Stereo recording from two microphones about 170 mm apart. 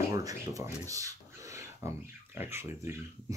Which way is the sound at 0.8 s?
20° right (ahead or behind).